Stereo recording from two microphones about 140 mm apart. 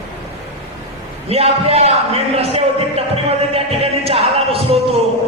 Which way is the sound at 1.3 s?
45° right (ahead or behind).